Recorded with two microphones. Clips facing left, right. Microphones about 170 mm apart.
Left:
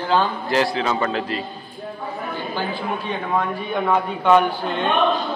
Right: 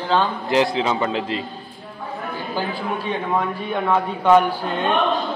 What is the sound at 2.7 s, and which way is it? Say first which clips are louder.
Speech: right 1 dB; 5° right (ahead or behind).